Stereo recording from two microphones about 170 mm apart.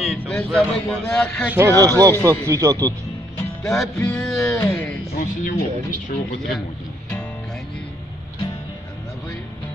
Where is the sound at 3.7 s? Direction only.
5° left (ahead or behind).